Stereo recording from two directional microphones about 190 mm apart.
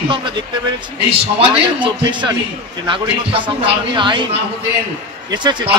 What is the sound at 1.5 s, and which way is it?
Speech, 25° right (ahead or behind).